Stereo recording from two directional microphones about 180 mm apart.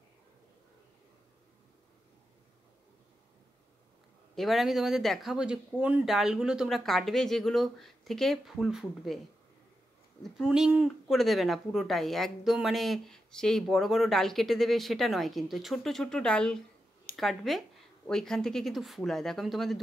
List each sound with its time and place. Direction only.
4.4 s speech: centre (ahead or behind)
10.3 s speech: 5° right (ahead or behind)